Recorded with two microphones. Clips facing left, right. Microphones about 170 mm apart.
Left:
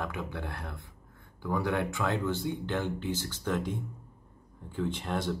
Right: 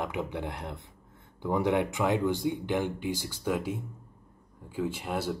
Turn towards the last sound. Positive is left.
turn(degrees=-10)  # may be behind; listen again after turning